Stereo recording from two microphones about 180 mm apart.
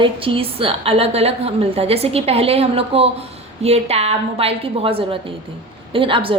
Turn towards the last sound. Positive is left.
turn(degrees=-30)  # may be behind; listen again after turning